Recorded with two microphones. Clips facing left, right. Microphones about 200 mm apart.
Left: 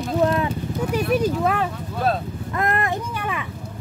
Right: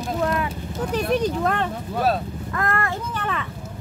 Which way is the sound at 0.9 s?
10° left (ahead or behind).